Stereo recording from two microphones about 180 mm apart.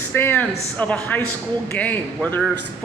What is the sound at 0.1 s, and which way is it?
Speech, 10° left (ahead or behind).